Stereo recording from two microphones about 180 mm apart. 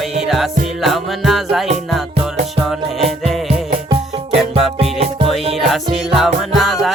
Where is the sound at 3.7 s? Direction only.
35° right (ahead or behind).